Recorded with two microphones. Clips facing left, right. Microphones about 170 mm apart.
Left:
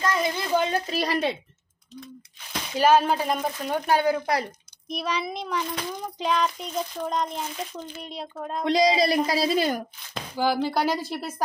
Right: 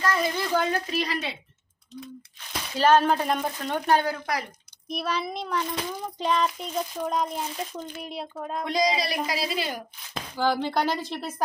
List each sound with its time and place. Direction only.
0.0 s speech: 20° left (ahead or behind)
0.9 s speech: 40° left (ahead or behind)
2.7 s speech: 10° left (ahead or behind)
4.8 s speech: centre (ahead or behind)
8.6 s speech: 30° left (ahead or behind)
10.3 s speech: 10° left (ahead or behind)